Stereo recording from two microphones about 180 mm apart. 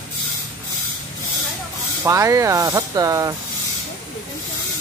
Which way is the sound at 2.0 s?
15° right (ahead or behind).